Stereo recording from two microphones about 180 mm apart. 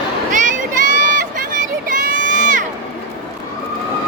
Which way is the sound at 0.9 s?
45° right (ahead or behind).